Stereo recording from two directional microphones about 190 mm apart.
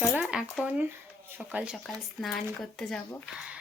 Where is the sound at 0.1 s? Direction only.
5° right (ahead or behind).